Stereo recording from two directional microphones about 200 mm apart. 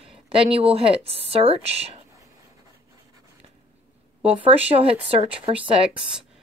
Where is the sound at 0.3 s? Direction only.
30° right (ahead or behind).